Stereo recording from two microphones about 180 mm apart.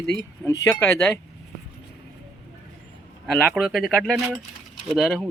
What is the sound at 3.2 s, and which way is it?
Speech, 5° left (ahead or behind).